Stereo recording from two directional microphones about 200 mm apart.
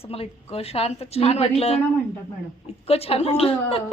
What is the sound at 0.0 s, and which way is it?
A woman's voice, 30° left (ahead or behind).